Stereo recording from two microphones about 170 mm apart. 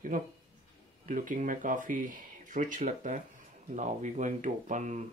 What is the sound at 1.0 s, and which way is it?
Speech, 50° right (ahead or behind).